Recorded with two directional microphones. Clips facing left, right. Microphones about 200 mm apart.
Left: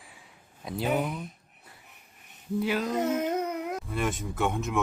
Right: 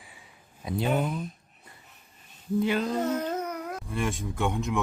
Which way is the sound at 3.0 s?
20° left (ahead or behind).